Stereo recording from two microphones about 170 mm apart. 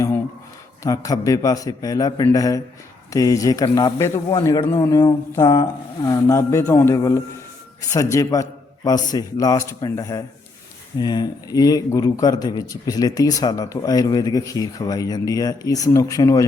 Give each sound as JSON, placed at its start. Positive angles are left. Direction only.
{"t": 0.8, "sound": "speech", "side_deg": 20}